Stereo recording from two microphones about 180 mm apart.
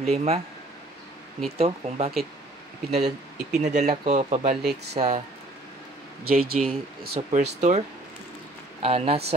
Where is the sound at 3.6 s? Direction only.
40° right (ahead or behind).